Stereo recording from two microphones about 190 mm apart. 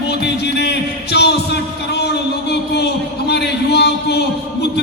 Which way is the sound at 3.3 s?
60° left (ahead or behind).